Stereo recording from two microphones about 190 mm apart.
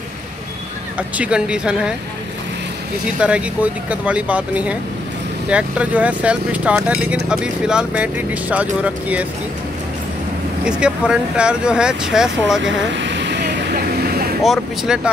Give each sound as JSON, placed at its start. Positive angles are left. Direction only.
{"t": 0.9, "sound": "speech", "side_deg": -5}
{"t": 3.2, "sound": "speech", "side_deg": -5}
{"t": 10.6, "sound": "speech", "side_deg": -5}
{"t": 12.6, "sound": "vehicle", "side_deg": -70}
{"t": 14.4, "sound": "speech", "side_deg": 0}